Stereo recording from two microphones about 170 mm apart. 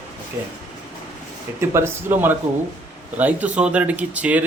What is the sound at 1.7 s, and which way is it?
Speech, 15° right (ahead or behind).